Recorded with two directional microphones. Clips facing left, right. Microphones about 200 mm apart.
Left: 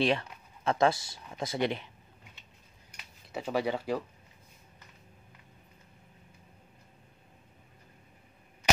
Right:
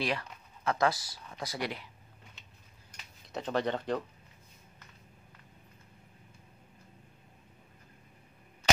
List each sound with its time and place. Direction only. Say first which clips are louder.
0.0 s speech: left 6 dB; 25° left (ahead or behind)
3.3 s speech: left 1 dB; 5° left (ahead or behind)